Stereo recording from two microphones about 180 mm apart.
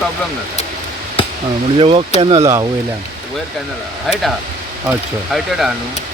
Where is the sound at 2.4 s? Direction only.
20° right (ahead or behind).